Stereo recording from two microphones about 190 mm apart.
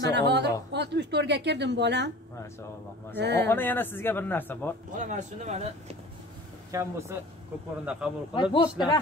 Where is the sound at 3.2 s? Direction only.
60° right (ahead or behind).